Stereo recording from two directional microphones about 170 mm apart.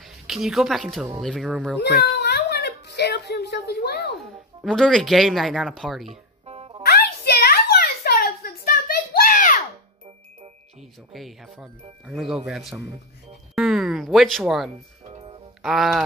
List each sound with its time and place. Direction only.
0.0 s speech: centre (ahead or behind)
2.1 s a sound: 75° left (ahead or behind)
4.2 s speech: 5° left (ahead or behind)
6.0 s music: 35° right (ahead or behind)
6.8 s a sound: 70° left (ahead or behind); by 9.6 s 55° left (ahead or behind)
11.1 s speech: centre (ahead or behind)
13.6 s a sound: centre (ahead or behind)
15.0 s music: 35° right (ahead or behind)
15.6 s speech: centre (ahead or behind)